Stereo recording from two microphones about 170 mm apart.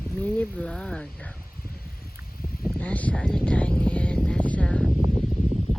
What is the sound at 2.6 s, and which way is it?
Vehicle, 10° left (ahead or behind).